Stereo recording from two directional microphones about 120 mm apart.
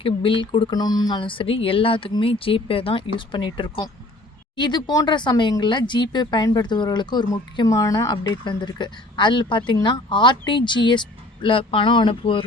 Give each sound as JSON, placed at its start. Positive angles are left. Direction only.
{"t": 0.0, "sound": "speech", "side_deg": 45}